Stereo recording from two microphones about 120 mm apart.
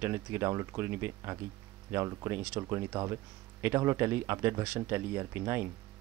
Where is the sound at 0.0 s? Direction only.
20° right (ahead or behind).